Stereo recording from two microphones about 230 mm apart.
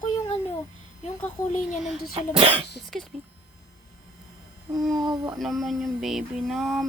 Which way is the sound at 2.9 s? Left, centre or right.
Centre.